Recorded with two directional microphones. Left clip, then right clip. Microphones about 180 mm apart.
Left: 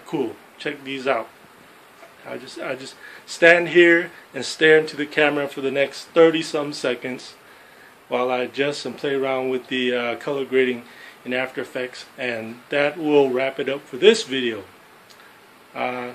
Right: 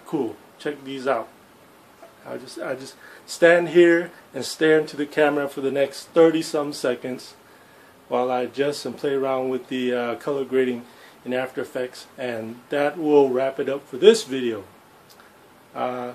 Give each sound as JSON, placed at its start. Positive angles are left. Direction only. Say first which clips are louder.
{"t": 0.1, "sound": "speech", "louder": "left 1 dB", "side_deg": -10}
{"t": 2.2, "sound": "speech", "louder": "left 1 dB", "side_deg": -5}
{"t": 15.7, "sound": "speech", "louder": "left 1 dB", "side_deg": -5}